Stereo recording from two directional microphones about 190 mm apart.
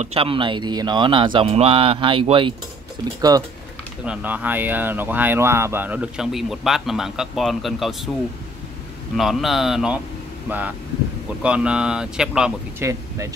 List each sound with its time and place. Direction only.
0.0 s speech: 30° right (ahead or behind)
4.0 s speech: 5° right (ahead or behind)
9.1 s speech: centre (ahead or behind)